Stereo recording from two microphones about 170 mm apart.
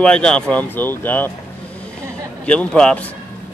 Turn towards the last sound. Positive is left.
turn(degrees=5)  # may be behind; listen again after turning